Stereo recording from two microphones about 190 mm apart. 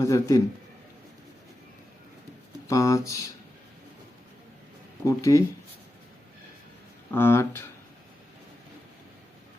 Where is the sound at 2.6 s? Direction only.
15° left (ahead or behind).